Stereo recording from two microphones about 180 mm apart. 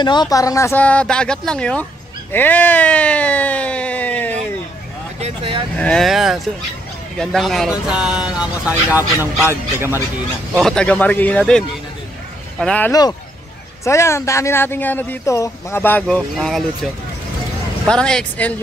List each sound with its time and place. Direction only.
0.0 s speech: 25° left (ahead or behind); by 1.9 s 5° left (ahead or behind)
2.3 s a sound: 10° left (ahead or behind)
5.2 s vehicle: 30° right (ahead or behind)
5.8 s speech: 5° left (ahead or behind); by 9.5 s 10° right (ahead or behind)
10.6 s speech: 5° left (ahead or behind)